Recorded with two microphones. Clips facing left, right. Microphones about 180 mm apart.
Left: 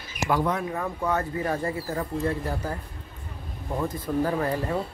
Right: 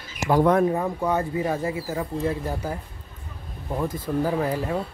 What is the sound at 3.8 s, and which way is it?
Speech, 5° right (ahead or behind).